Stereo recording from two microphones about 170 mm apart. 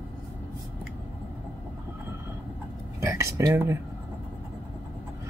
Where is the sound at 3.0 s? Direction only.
15° right (ahead or behind).